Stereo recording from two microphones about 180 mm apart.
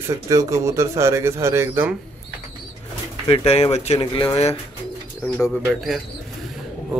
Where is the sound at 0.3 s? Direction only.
15° right (ahead or behind).